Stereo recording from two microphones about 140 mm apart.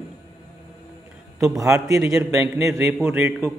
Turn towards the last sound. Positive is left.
turn(degrees=-15)  # may be behind; listen again after turning